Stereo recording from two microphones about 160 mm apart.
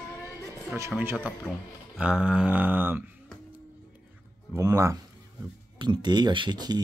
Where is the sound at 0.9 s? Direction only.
10° right (ahead or behind).